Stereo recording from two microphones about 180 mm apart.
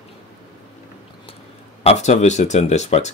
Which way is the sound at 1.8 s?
35° left (ahead or behind).